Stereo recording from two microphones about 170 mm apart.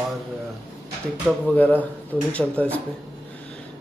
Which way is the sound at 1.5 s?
10° left (ahead or behind).